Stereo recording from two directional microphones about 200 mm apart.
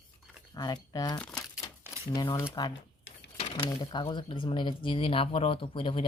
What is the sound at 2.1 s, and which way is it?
Speech, 15° left (ahead or behind).